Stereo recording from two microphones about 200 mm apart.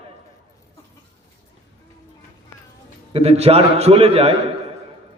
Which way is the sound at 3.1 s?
30° right (ahead or behind).